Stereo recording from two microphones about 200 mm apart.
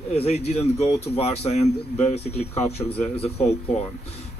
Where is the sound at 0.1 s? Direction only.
30° left (ahead or behind).